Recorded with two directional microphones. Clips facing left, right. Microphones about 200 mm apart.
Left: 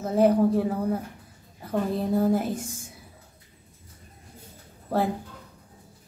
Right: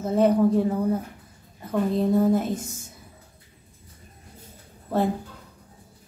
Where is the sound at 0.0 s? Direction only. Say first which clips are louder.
Right 1 dB; 10° left (ahead or behind).